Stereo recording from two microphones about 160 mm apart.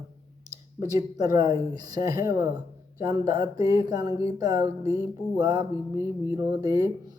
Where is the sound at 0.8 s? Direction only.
25° right (ahead or behind).